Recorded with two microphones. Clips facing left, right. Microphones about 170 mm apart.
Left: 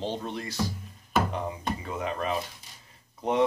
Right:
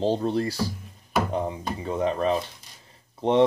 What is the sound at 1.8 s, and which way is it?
Speech, 35° right (ahead or behind).